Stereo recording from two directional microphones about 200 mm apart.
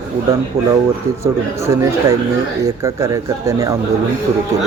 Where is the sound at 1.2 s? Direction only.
15° right (ahead or behind).